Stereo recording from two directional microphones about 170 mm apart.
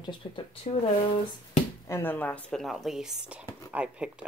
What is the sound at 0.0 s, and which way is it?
Speech, 30° left (ahead or behind).